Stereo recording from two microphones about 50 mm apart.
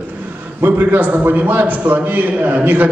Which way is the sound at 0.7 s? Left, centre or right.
Right.